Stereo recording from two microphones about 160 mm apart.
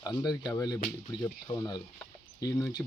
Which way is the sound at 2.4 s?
20° left (ahead or behind).